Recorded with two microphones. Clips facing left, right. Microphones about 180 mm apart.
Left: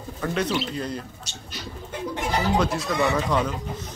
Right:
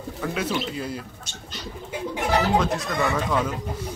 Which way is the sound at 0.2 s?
5° right (ahead or behind).